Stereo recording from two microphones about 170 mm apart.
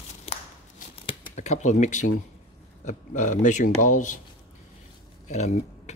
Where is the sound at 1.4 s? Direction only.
45° left (ahead or behind).